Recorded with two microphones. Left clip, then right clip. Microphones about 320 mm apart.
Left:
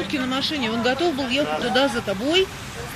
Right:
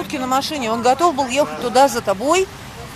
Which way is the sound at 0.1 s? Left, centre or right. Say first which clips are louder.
Right 7 dB; centre.